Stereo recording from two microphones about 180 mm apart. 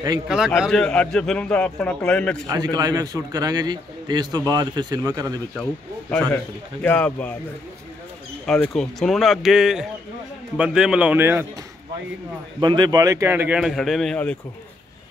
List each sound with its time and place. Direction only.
0.6 s a man's voice: 5° left (ahead or behind)
2.4 s a man's voice: 20° right (ahead or behind)
5.6 s speech: 5° left (ahead or behind)
8.5 s a man's voice: 5° left (ahead or behind); by 11.4 s 10° right (ahead or behind)
12.5 s speech: 25° right (ahead or behind); by 14.3 s 5° left (ahead or behind)